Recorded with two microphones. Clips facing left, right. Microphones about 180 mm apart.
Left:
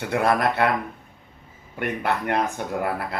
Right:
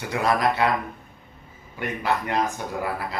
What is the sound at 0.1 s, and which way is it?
Speech, 55° left (ahead or behind).